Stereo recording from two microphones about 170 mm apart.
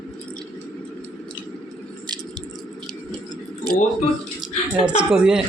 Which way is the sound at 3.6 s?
Centre (ahead or behind).